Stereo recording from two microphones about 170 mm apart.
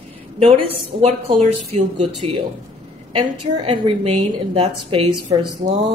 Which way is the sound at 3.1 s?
30° right (ahead or behind).